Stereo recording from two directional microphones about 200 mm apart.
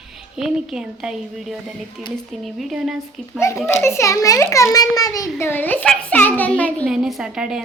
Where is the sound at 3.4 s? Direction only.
15° left (ahead or behind).